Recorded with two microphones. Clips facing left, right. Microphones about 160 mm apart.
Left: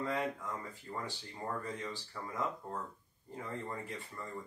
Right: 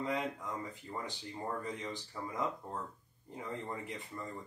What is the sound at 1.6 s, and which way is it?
Speech, 20° right (ahead or behind).